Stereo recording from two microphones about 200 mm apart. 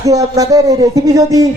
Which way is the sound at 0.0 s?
15° right (ahead or behind).